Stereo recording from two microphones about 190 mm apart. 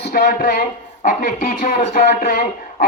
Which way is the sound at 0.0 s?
50° left (ahead or behind).